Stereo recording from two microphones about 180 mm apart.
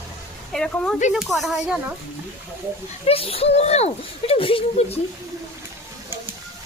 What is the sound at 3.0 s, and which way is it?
Speech, 30° left (ahead or behind).